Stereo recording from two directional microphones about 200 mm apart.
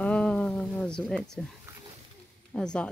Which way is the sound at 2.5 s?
5° left (ahead or behind).